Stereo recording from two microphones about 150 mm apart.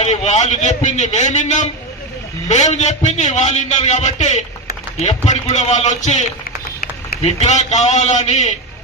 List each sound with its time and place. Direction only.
0.0 s a man's voice: 50° left (ahead or behind)